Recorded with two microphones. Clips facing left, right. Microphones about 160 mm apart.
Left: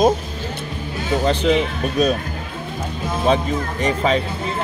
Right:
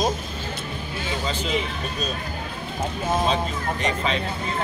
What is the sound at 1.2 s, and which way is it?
Speech, 60° left (ahead or behind).